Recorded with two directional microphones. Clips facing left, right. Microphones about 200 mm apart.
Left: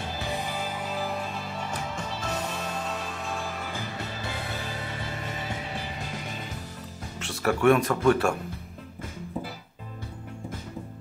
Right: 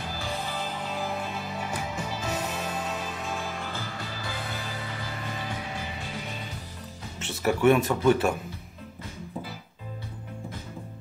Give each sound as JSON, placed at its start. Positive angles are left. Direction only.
{"t": 0.1, "sound": "music", "side_deg": 20}
{"t": 3.7, "sound": "music", "side_deg": 20}
{"t": 7.2, "sound": "speech", "side_deg": 0}